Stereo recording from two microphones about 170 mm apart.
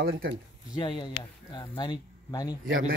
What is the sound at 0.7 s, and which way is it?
Speech, 25° left (ahead or behind).